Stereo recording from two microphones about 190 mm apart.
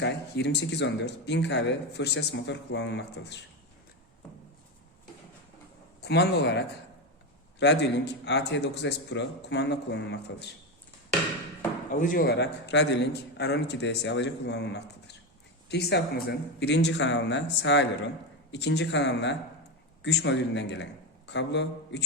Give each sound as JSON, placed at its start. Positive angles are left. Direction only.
{"t": 0.0, "sound": "speech", "side_deg": 65}
{"t": 6.0, "sound": "speech", "side_deg": 65}
{"t": 11.9, "sound": "a man's voice", "side_deg": 45}